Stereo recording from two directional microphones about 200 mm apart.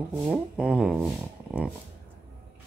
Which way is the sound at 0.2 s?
5° right (ahead or behind).